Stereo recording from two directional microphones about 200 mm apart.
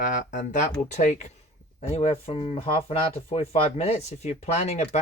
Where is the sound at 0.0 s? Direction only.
40° left (ahead or behind).